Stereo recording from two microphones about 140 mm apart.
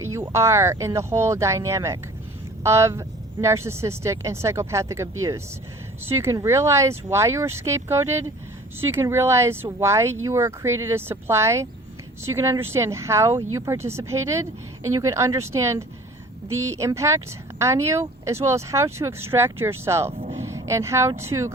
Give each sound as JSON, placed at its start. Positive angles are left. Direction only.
{"t": 0.0, "sound": "speech", "side_deg": -20}
{"t": 20.4, "sound": "a sound", "side_deg": -20}
{"t": 21.2, "sound": "speech", "side_deg": -20}